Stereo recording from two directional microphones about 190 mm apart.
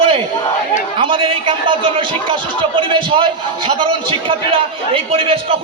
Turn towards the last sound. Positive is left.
turn(degrees=-30)  # may be behind; listen again after turning